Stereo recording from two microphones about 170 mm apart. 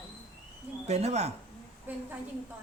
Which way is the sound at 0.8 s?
40° right (ahead or behind).